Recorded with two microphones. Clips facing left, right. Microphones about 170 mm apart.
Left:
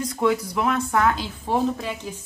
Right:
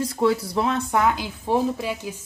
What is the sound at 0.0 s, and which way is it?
Speech, 30° right (ahead or behind).